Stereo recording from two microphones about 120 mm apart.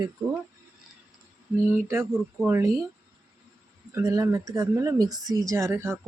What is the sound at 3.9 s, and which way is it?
Speech, 25° right (ahead or behind).